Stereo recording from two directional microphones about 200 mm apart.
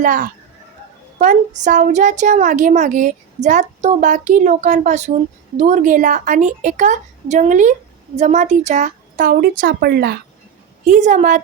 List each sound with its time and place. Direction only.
0.0 s a woman's voice: 40° right (ahead or behind)
10.8 s a woman's voice: 40° right (ahead or behind)